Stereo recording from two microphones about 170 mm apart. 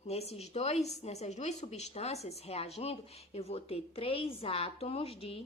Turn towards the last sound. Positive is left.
turn(degrees=35)  # may be behind; listen again after turning